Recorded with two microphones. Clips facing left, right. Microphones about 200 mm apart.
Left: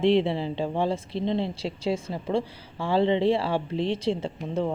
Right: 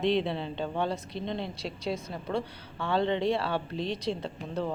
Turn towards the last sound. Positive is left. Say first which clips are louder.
# left 5 dB
turn(degrees=20)  # may be behind; listen again after turning